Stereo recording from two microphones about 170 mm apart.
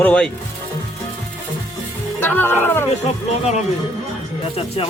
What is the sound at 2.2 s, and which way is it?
Music, 10° left (ahead or behind).